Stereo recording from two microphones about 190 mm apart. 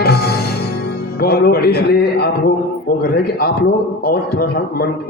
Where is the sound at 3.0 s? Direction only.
55° left (ahead or behind).